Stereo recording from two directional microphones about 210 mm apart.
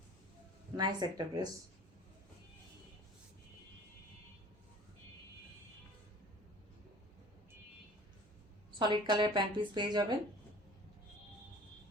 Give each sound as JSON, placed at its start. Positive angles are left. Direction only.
{"t": 0.8, "sound": "speech", "side_deg": -20}
{"t": 8.8, "sound": "speech", "side_deg": -20}